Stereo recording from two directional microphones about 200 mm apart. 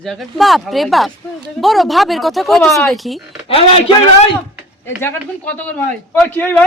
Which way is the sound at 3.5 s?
30° left (ahead or behind).